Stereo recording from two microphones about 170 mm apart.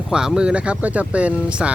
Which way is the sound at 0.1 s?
5° right (ahead or behind).